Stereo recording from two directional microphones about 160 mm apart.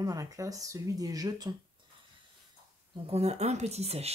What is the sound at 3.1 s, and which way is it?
Speech, 40° right (ahead or behind).